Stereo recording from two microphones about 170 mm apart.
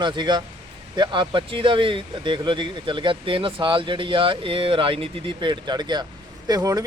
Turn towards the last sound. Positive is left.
turn(degrees=-20)  # may be behind; listen again after turning